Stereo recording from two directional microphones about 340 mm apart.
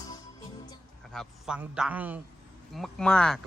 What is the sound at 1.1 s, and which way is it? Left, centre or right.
Speech, centre.